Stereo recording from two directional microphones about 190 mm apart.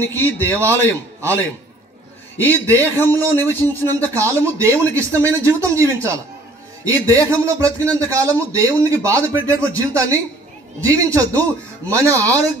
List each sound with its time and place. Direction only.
0.0 s speech: 10° left (ahead or behind)
2.4 s speech: 10° left (ahead or behind)
4.2 s speech: 15° right (ahead or behind)